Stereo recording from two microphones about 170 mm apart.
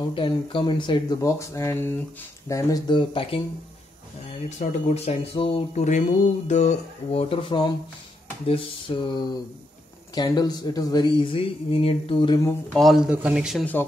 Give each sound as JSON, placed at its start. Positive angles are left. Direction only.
{"t": 0.1, "sound": "speech", "side_deg": 30}
{"t": 4.6, "sound": "speech", "side_deg": 40}
{"t": 12.7, "sound": "a man's voice", "side_deg": 0}